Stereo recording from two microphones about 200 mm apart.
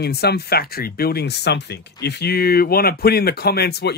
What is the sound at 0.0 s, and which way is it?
Speech, 55° left (ahead or behind).